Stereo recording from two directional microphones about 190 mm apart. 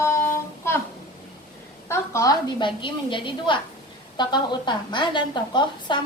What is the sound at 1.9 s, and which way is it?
A woman's voice, 15° left (ahead or behind).